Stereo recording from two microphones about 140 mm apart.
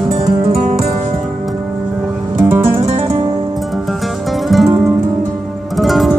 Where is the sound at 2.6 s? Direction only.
45° right (ahead or behind).